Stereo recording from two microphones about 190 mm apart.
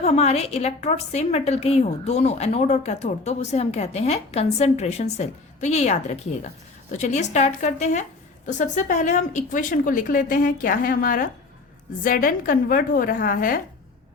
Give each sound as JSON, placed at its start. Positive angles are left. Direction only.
{"t": 0.0, "sound": "a woman's voice", "side_deg": 35}